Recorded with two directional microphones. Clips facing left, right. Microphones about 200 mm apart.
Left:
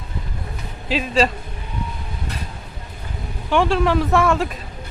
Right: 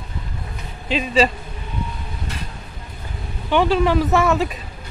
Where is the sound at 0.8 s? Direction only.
Centre (ahead or behind).